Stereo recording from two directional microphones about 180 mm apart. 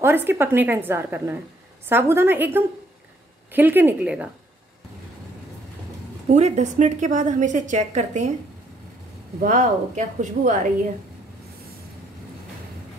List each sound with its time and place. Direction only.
0.0 s a woman's voice: 10° right (ahead or behind)
6.3 s a woman's voice: 40° right (ahead or behind)
9.4 s a woman's voice: 45° right (ahead or behind)